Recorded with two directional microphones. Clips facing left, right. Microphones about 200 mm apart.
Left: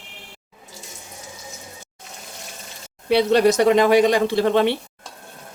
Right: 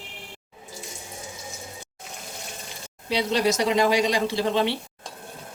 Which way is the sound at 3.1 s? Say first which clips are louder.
Left 7 dB; 60° left (ahead or behind).